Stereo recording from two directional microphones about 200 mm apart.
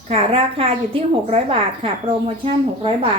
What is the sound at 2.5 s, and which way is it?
Speech, 25° right (ahead or behind).